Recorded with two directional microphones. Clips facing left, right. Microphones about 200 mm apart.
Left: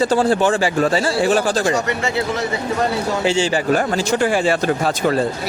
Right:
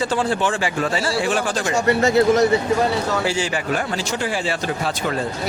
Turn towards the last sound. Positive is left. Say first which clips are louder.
# left 6 dB
turn(degrees=50)  # may be behind; listen again after turning